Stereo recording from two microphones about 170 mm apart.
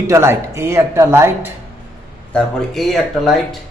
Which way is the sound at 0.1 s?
15° right (ahead or behind).